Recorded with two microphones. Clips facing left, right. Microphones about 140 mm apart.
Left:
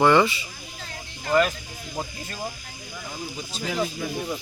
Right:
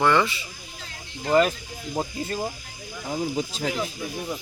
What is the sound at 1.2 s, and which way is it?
Speech, 25° right (ahead or behind).